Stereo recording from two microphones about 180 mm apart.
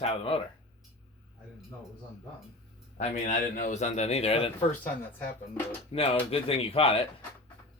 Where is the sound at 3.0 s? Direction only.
45° left (ahead or behind).